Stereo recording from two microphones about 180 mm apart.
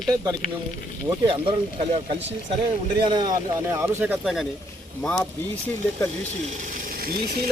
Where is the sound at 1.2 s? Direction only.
30° right (ahead or behind).